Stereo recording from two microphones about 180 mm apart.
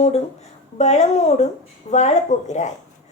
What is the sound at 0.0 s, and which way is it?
A woman's voice, 35° left (ahead or behind).